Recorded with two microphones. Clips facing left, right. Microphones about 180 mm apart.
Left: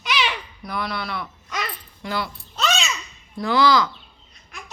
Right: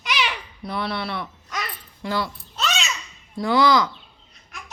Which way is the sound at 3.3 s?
20° right (ahead or behind).